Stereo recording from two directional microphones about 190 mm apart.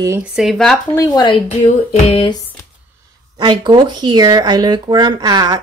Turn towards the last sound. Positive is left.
turn(degrees=-20)  # may be behind; listen again after turning